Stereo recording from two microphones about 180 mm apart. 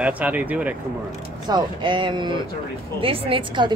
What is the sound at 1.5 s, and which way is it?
A woman's voice, 25° right (ahead or behind).